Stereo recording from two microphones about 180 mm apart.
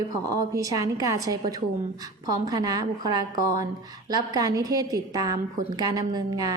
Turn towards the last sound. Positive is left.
turn(degrees=-20)  # may be behind; listen again after turning